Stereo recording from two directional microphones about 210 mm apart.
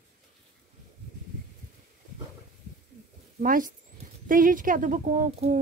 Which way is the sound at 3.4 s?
40° right (ahead or behind).